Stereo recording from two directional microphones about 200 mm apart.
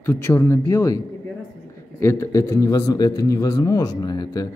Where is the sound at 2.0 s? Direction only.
10° left (ahead or behind).